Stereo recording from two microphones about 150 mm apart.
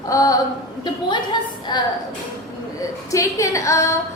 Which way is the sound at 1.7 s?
30° left (ahead or behind).